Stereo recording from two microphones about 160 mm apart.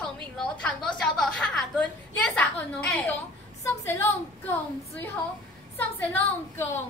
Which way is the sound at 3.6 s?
15° left (ahead or behind).